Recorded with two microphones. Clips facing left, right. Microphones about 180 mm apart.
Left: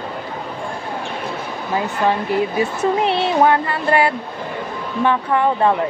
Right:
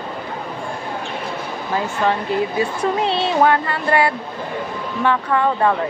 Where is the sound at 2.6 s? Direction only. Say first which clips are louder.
Left 2 dB; 20° left (ahead or behind).